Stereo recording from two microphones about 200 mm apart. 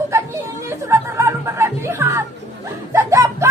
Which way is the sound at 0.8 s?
15° right (ahead or behind).